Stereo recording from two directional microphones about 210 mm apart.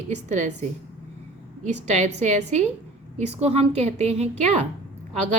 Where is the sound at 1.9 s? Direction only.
35° right (ahead or behind).